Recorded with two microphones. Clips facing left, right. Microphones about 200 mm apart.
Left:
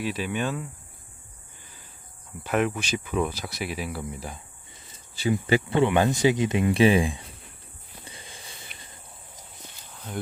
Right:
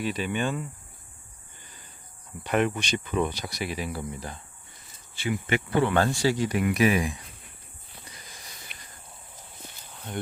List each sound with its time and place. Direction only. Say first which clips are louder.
0.0 s speech: even; centre (ahead or behind)
1.6 s a sound: even; centre (ahead or behind)
2.4 s speech: even; centre (ahead or behind)
5.1 s speech: left 4 dB; 35° left (ahead or behind)
8.0 s sniff: left 4 dB; 30° left (ahead or behind)
9.9 s walk: even; centre (ahead or behind)